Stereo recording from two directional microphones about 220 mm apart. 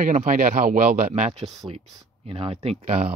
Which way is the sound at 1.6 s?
15° right (ahead or behind).